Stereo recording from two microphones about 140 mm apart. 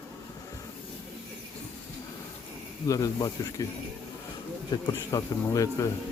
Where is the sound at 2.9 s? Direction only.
25° left (ahead or behind).